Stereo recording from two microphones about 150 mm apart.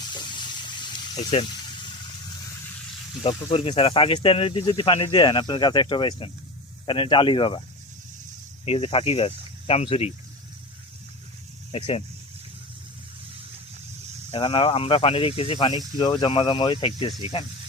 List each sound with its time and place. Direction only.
0.0 s a sound: 30° left (ahead or behind)
1.1 s speech: 45° left (ahead or behind)
3.2 s speech: 40° left (ahead or behind)
8.6 s speech: 40° left (ahead or behind)
11.7 s speech: 40° left (ahead or behind)
14.3 s speech: 40° left (ahead or behind)